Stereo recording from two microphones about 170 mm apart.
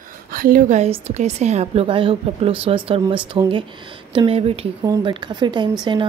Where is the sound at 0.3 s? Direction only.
55° right (ahead or behind).